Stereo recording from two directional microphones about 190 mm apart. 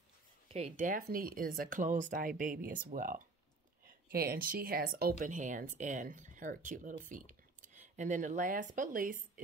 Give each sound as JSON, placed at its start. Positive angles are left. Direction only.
{"t": 0.5, "sound": "speech", "side_deg": -30}
{"t": 5.2, "sound": "speech", "side_deg": -40}